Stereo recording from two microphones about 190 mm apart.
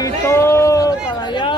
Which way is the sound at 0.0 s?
15° left (ahead or behind).